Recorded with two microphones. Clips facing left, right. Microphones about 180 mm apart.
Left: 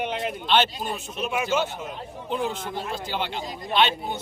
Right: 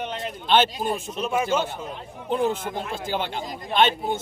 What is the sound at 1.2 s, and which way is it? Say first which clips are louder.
Speech: right 2 dB; 30° right (ahead or behind).